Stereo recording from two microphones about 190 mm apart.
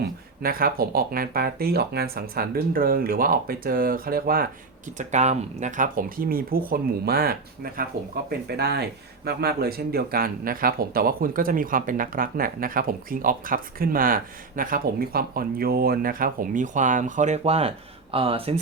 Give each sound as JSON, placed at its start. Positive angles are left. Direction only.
{"t": 0.4, "sound": "speech", "side_deg": -50}
{"t": 4.9, "sound": "speech", "side_deg": -40}